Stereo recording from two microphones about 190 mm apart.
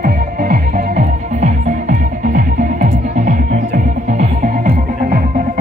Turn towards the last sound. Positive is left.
turn(degrees=-45)  # may be behind; listen again after turning